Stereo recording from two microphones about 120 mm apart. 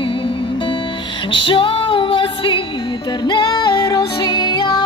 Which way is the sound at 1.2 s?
45° left (ahead or behind).